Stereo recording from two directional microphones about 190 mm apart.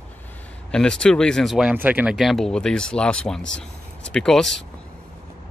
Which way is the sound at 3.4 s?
75° left (ahead or behind).